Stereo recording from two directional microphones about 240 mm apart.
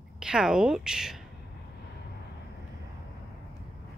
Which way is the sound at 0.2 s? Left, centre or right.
Centre.